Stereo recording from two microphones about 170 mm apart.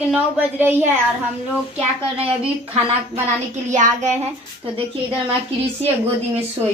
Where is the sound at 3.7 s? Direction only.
45° right (ahead or behind).